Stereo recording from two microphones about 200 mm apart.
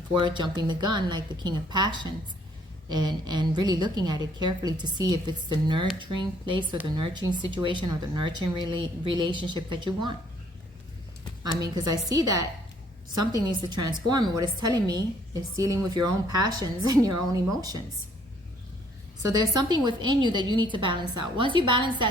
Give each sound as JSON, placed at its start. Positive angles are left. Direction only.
{"t": 0.2, "sound": "a woman's voice", "side_deg": -20}
{"t": 11.6, "sound": "a woman's voice", "side_deg": -20}
{"t": 19.3, "sound": "a woman's voice", "side_deg": -20}